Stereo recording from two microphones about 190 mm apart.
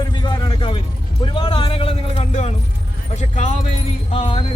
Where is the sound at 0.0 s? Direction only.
20° left (ahead or behind).